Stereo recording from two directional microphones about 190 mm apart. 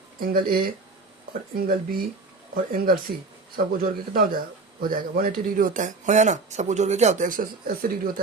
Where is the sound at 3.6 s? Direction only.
45° right (ahead or behind).